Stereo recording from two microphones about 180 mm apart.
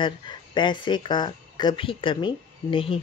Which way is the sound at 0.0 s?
25° left (ahead or behind).